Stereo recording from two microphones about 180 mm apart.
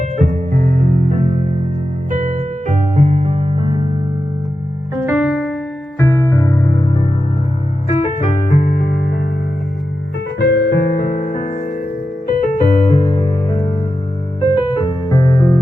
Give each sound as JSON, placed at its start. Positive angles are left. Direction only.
{"t": 0.0, "sound": "music", "side_deg": -45}
{"t": 4.9, "sound": "music", "side_deg": -10}
{"t": 6.0, "sound": "music", "side_deg": 10}
{"t": 7.9, "sound": "music", "side_deg": 50}
{"t": 10.4, "sound": "music", "side_deg": 65}
{"t": 12.5, "sound": "music", "side_deg": 35}